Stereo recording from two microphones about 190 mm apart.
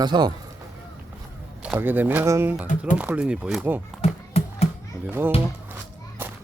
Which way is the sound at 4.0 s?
35° left (ahead or behind).